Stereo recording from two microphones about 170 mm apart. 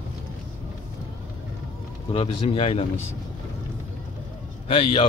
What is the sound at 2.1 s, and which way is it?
Speech, 35° left (ahead or behind).